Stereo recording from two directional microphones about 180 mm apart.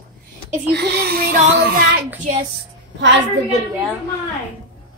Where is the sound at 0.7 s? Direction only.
65° right (ahead or behind).